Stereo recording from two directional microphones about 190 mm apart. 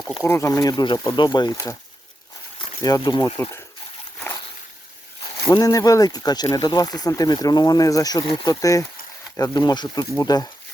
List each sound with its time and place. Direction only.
0.2 s speech: 15° left (ahead or behind)
2.8 s speech: 20° left (ahead or behind)
5.5 s speech: 20° left (ahead or behind)